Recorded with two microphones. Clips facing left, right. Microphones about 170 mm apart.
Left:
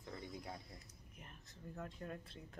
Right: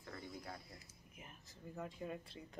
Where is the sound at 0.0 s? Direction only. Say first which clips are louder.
Left 1 dB; 20° left (ahead or behind).